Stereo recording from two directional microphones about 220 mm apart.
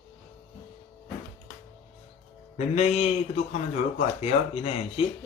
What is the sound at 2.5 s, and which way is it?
A man's voice, 30° left (ahead or behind).